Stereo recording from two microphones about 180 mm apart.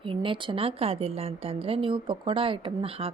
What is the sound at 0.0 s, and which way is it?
A woman's voice, 30° right (ahead or behind).